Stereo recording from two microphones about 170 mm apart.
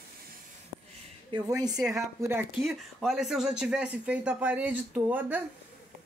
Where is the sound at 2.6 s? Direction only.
Centre (ahead or behind).